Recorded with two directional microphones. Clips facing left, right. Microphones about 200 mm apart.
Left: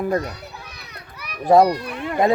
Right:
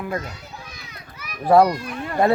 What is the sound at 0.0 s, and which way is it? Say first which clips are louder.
Speech: left 6 dB; 40° left (ahead or behind).